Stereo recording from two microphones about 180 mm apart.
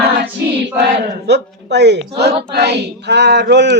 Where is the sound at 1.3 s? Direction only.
70° right (ahead or behind).